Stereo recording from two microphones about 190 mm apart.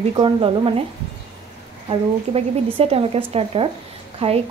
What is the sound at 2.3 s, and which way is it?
A woman's voice, 30° right (ahead or behind).